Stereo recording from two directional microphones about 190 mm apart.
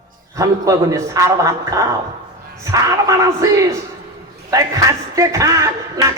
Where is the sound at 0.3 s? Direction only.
15° right (ahead or behind).